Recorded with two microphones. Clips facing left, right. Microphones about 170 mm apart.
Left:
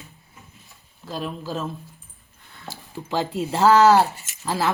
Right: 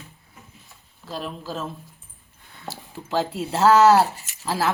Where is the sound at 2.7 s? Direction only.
Centre (ahead or behind).